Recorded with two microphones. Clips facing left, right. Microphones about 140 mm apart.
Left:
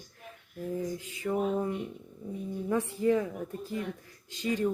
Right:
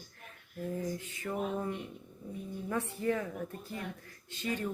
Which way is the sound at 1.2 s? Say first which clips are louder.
Left 6 dB; 15° left (ahead or behind).